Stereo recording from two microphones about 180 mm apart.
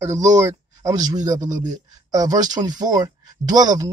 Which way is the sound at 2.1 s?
20° right (ahead or behind).